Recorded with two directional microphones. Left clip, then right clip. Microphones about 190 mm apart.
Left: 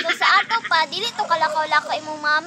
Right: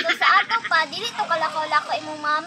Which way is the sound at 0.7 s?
25° left (ahead or behind).